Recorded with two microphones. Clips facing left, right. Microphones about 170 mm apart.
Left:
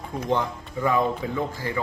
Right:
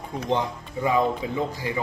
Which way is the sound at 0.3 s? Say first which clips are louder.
Even; 15° right (ahead or behind).